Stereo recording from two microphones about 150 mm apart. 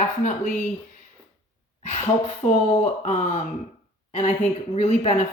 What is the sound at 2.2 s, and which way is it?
Speech, 45° left (ahead or behind).